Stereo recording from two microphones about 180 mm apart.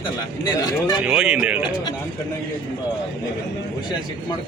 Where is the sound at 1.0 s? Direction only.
5° right (ahead or behind).